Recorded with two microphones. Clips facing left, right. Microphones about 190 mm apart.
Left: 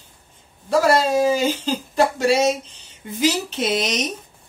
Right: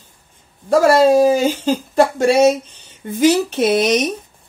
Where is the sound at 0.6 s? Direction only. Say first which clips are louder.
Right 6 dB; 50° right (ahead or behind).